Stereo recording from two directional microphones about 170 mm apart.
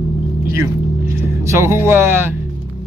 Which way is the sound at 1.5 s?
15° right (ahead or behind).